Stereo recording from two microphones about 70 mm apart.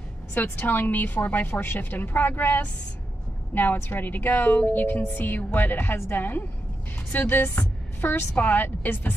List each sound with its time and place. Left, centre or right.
0.3 s a woman's voice: left